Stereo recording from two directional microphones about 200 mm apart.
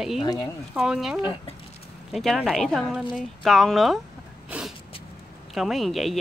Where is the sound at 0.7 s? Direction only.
5° right (ahead or behind).